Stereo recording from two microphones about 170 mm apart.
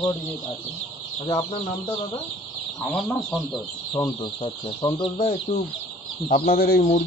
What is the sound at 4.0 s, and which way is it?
Speech, 25° left (ahead or behind).